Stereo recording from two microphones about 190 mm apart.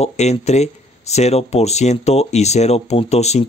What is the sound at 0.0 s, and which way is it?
Speech, 35° left (ahead or behind).